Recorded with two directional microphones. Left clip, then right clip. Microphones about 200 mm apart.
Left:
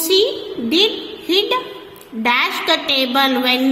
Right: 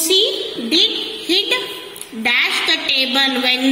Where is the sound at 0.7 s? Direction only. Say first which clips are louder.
Right 1 dB; 60° left (ahead or behind).